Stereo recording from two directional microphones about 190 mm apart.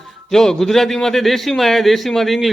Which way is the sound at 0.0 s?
Centre (ahead or behind).